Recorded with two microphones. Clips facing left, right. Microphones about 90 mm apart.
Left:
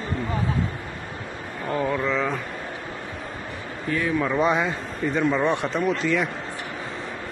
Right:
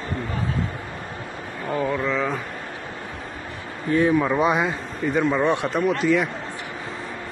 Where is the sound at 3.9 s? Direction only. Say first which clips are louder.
Right 6 dB; 25° right (ahead or behind).